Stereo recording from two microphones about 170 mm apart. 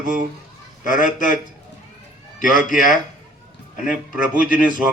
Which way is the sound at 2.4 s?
50° left (ahead or behind).